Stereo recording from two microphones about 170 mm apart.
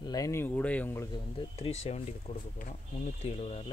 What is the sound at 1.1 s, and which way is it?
Speech, 35° left (ahead or behind).